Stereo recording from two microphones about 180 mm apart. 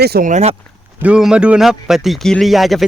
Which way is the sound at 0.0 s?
60° right (ahead or behind).